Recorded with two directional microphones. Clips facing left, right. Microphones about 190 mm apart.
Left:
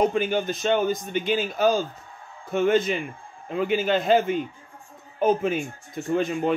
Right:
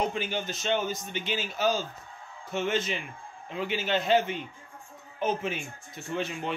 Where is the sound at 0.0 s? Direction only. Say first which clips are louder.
Left 8 dB; 50° left (ahead or behind).